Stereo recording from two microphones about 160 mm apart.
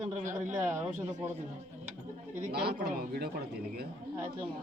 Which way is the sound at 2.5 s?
85° right.